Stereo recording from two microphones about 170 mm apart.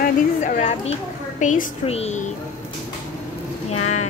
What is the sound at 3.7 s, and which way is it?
Speech, 40° left (ahead or behind).